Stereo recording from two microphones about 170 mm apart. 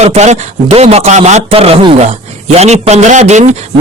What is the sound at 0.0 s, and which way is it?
A man's voice, 40° right (ahead or behind).